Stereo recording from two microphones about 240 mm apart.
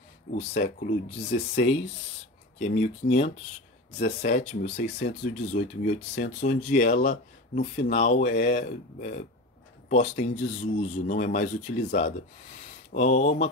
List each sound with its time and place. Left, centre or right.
0.4 s speech: left
3.0 s speech: left
3.9 s speech: left